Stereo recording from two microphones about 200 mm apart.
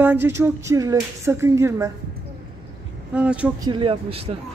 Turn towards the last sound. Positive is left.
turn(degrees=-30)  # may be behind; listen again after turning